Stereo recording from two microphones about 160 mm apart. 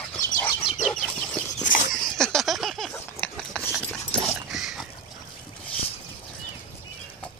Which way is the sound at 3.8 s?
5° left (ahead or behind).